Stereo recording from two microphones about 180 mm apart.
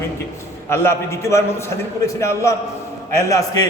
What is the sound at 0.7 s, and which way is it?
A man's voice, 15° left (ahead or behind).